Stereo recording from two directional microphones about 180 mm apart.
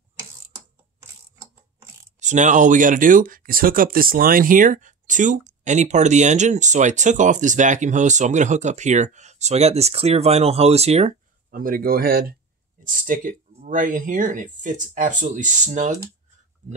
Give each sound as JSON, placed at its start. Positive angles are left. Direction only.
{"t": 2.1, "sound": "speech", "side_deg": -40}
{"t": 11.5, "sound": "speech", "side_deg": -50}